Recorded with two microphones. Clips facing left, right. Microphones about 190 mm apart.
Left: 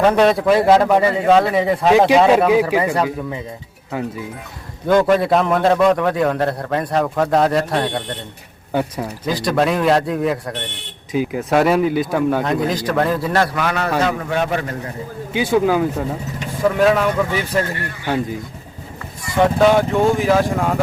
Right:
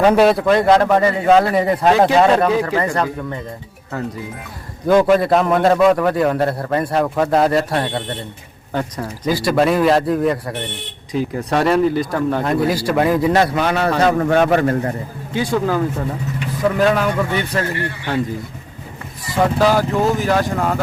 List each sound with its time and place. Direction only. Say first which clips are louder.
0.0 s a man's voice: right 1 dB; 5° right (ahead or behind)
2.0 s speech: left 2 dB; 15° left (ahead or behind)
4.9 s a man's voice: right 1 dB; 5° right (ahead or behind)
8.7 s speech: left 2 dB; 10° left (ahead or behind)
9.2 s a man's voice: right 2 dB; 5° right (ahead or behind); by 13.9 s 30° right (ahead or behind)
14.0 s a man's voice: right 5 dB; 50° right (ahead or behind)
15.3 s a man's voice: left 2 dB; 10° left (ahead or behind)
19.4 s a man's voice: left 2 dB; centre (ahead or behind)